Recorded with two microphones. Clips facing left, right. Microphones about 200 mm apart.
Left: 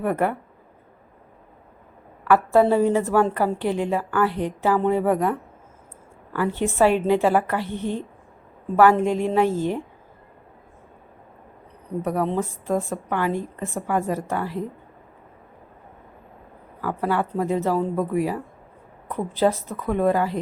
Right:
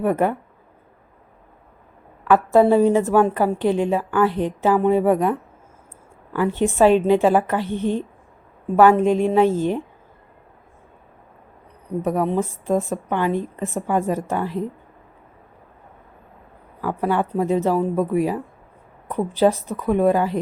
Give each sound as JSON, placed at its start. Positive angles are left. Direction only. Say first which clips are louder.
{"t": 0.0, "sound": "a woman's voice", "louder": "right 3 dB", "side_deg": -15}
{"t": 2.2, "sound": "a woman's voice", "louder": "right 2 dB", "side_deg": -20}
{"t": 12.0, "sound": "a woman's voice", "louder": "right 3 dB", "side_deg": -15}
{"t": 16.8, "sound": "a woman's voice", "louder": "right 2 dB", "side_deg": -15}